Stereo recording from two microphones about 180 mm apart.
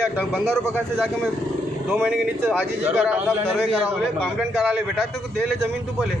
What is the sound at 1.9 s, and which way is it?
A man's voice, 5° right (ahead or behind).